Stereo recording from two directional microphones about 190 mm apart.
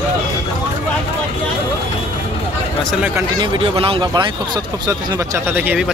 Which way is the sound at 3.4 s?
25° right (ahead or behind).